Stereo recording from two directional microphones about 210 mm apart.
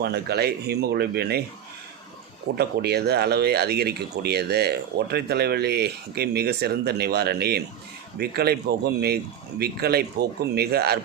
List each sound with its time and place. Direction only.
0.0 s speech: 50° right (ahead or behind)
2.6 s speech: 50° right (ahead or behind)